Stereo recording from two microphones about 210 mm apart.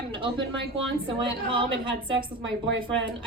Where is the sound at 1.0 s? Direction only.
25° right (ahead or behind).